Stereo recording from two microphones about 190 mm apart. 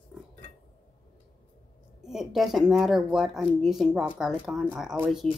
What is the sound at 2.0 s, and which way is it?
Speech, centre (ahead or behind).